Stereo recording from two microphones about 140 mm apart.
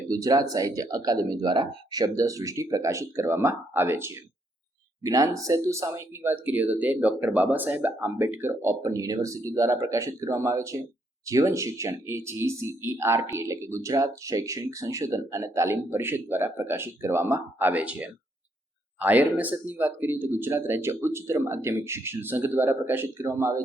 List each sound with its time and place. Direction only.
0.1 s speech: 25° right (ahead or behind)